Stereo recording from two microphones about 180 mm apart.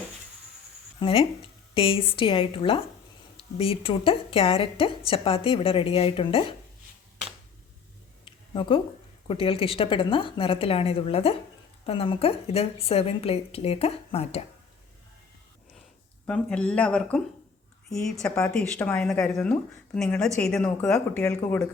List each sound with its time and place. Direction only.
0.9 s a woman's voice: 30° left (ahead or behind)
8.2 s a sound: 30° left (ahead or behind)
9.2 s a woman's voice: 30° left (ahead or behind)
16.2 s speech: 5° left (ahead or behind)
21.2 s speech: 15° left (ahead or behind)